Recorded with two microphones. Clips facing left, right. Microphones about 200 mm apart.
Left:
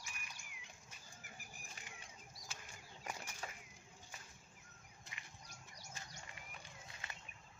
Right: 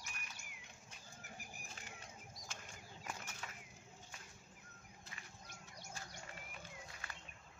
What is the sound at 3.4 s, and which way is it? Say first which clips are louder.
Bird: left 4 dB; 35° left (ahead or behind).